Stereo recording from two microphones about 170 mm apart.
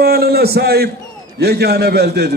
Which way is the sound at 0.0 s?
65° right (ahead or behind).